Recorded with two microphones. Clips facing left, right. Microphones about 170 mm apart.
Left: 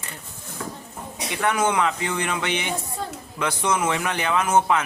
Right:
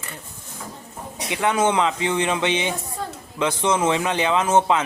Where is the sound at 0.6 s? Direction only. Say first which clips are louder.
Left 4 dB; 90° left.